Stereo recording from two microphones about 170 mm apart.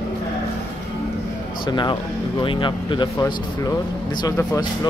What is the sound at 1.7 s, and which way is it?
Speech, 30° left (ahead or behind).